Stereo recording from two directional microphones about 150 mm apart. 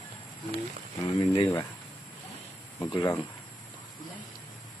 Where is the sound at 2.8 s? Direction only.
20° left (ahead or behind).